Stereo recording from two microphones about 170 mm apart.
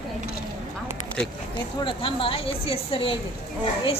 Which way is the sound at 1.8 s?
30° left (ahead or behind).